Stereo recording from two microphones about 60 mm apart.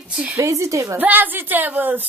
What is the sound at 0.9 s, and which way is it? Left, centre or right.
A woman's voice, right.